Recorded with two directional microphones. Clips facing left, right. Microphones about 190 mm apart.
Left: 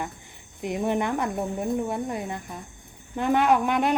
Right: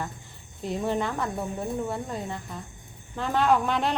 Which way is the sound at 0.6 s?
15° left (ahead or behind).